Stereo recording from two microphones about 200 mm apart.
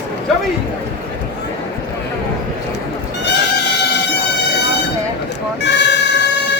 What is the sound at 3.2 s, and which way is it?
Music, 60° left (ahead or behind).